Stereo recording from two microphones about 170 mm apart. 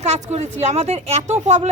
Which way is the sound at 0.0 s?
40° right (ahead or behind).